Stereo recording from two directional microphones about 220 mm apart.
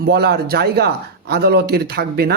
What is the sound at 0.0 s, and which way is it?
A man's voice, 45° right (ahead or behind).